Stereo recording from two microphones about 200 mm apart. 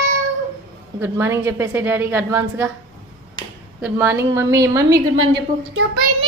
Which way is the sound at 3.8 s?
5° right (ahead or behind).